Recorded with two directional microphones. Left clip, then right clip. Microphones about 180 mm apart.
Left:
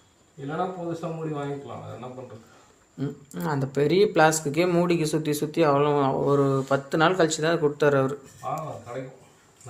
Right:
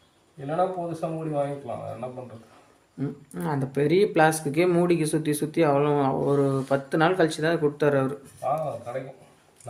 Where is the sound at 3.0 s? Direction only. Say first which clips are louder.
Even; 15° right (ahead or behind).